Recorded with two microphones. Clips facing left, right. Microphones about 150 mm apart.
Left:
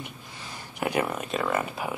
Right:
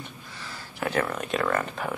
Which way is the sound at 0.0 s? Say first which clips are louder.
Even; 20° left (ahead or behind).